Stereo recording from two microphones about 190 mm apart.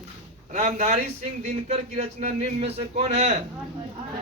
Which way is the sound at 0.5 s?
40° right (ahead or behind).